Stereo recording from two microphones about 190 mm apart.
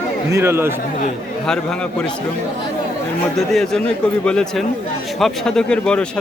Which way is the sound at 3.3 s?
Centre (ahead or behind).